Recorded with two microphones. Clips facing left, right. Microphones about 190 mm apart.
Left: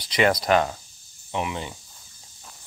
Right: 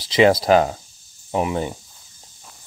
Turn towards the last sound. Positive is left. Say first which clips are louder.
# right 7 dB
turn(degrees=-45)  # may be behind; listen again after turning